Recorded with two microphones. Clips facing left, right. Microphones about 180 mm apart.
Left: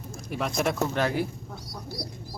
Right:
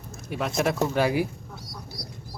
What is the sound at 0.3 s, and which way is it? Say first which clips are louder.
Speech: right 2 dB; centre (ahead or behind).